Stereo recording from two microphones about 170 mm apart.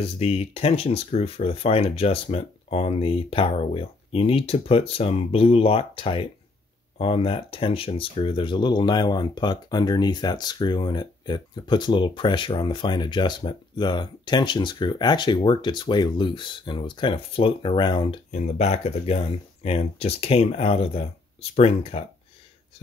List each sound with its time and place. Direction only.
0.0 s speech: 35° left (ahead or behind)
18.3 s speech: 40° left (ahead or behind)